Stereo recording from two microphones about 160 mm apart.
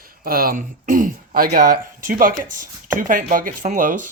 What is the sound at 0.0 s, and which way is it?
Speech, 65° right (ahead or behind).